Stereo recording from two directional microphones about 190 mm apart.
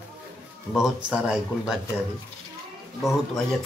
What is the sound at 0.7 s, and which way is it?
Speech, 5° right (ahead or behind).